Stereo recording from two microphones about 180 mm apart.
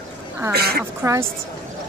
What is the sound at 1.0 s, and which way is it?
Speech, 15° right (ahead or behind).